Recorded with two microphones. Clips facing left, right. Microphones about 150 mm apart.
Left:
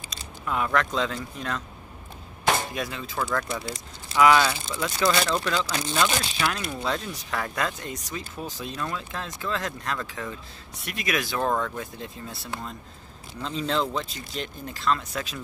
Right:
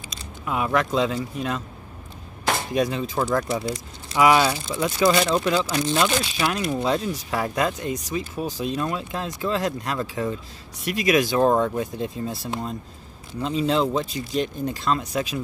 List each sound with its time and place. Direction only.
0.5 s speech: 15° right (ahead or behind)
2.7 s speech: 25° right (ahead or behind)
5.9 s speech: 25° right (ahead or behind)